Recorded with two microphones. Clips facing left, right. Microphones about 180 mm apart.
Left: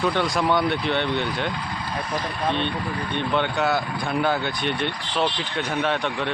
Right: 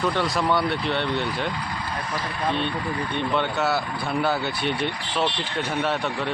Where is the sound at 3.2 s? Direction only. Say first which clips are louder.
Left 2 dB; 5° right (ahead or behind).